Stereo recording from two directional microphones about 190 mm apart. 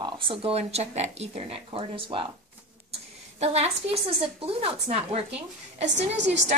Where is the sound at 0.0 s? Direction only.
25° right (ahead or behind).